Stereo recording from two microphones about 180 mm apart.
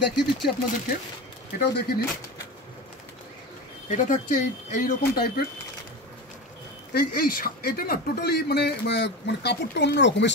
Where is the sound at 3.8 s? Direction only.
45° left (ahead or behind).